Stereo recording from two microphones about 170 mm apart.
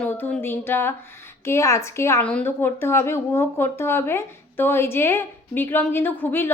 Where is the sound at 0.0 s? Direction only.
15° left (ahead or behind).